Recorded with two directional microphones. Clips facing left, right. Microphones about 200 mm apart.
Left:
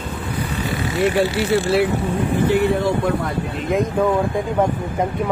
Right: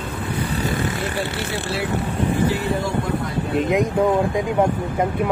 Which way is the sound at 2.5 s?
60° left (ahead or behind).